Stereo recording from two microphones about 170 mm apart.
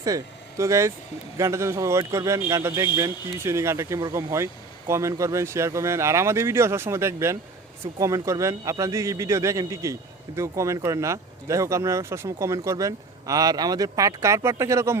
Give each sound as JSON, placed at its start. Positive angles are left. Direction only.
{"t": 0.0, "sound": "a man's voice", "side_deg": -20}